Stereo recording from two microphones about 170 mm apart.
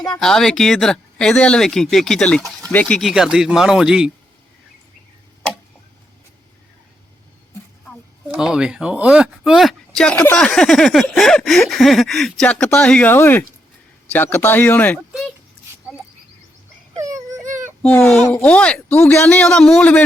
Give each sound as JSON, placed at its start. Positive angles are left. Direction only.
{"t": 0.1, "sound": "speech", "side_deg": 5}
{"t": 3.0, "sound": "speech", "side_deg": 0}
{"t": 8.3, "sound": "speech", "side_deg": -5}
{"t": 16.9, "sound": "whimper", "side_deg": -20}
{"t": 17.8, "sound": "speech", "side_deg": 10}